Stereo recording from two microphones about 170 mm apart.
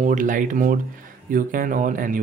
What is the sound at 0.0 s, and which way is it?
Speech, 50° right (ahead or behind).